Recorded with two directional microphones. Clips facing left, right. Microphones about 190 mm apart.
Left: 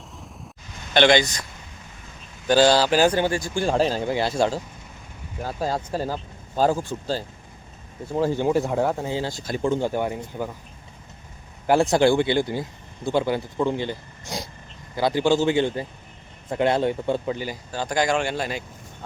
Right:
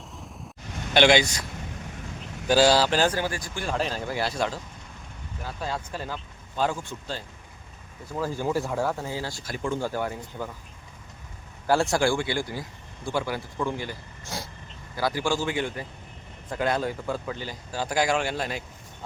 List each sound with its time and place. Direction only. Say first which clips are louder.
0.9 s speech: left 2 dB; 10° right (ahead or behind)
2.5 s speech: left 2 dB; 5° right (ahead or behind)
2.9 s speech: left 5 dB; 10° left (ahead or behind)
3.2 s speech: left 7 dB; 25° left (ahead or behind)
5.4 s speech: left 6 dB; 40° left (ahead or behind); by 10.5 s 20° left (ahead or behind)
11.6 s speech: left 5 dB; 20° left (ahead or behind)
17.3 s speech: left 5 dB; 10° left (ahead or behind)
17.7 s speech: left 2 dB; 5° right (ahead or behind)